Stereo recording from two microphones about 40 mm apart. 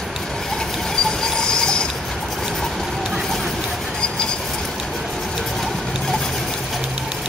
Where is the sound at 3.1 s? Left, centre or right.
Centre.